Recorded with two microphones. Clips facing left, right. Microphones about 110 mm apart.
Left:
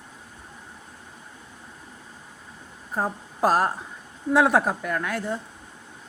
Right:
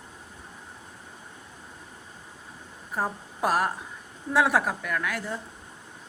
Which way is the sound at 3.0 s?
25° left (ahead or behind).